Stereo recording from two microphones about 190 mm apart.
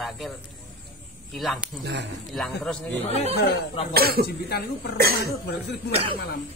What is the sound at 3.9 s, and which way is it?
Speech, 55° right (ahead or behind).